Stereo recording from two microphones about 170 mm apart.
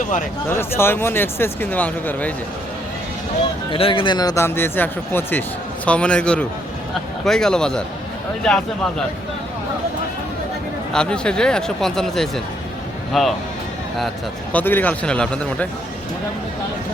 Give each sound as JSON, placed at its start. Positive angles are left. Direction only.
{"t": 0.0, "sound": "speech", "side_deg": 50}
{"t": 0.4, "sound": "speech", "side_deg": 15}
{"t": 3.7, "sound": "speech", "side_deg": 30}
{"t": 10.9, "sound": "speech", "side_deg": 5}
{"t": 14.5, "sound": "speech", "side_deg": 10}